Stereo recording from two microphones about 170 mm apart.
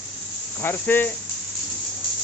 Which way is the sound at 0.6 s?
10° left (ahead or behind).